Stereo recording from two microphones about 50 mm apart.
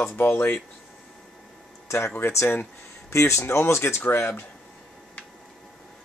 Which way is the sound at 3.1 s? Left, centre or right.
Left.